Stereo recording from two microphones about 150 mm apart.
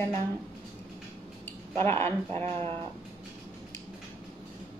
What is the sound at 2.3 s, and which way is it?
Speech, 40° right (ahead or behind).